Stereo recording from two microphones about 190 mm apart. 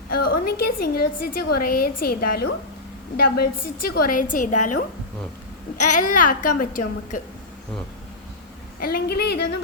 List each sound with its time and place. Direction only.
0.3 s a woman's voice: 55° left (ahead or behind)
5.9 s a woman's voice: 45° left (ahead or behind)
8.8 s a woman's voice: 55° left (ahead or behind)